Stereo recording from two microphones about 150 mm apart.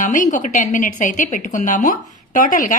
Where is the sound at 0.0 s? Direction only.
60° left (ahead or behind).